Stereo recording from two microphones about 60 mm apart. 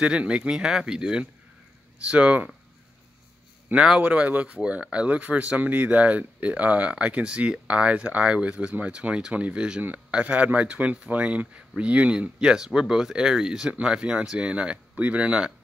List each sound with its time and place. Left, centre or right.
0.0 s speech: centre
4.0 s speech: right